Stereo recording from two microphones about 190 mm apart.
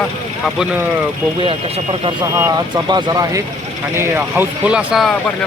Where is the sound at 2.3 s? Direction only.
15° right (ahead or behind).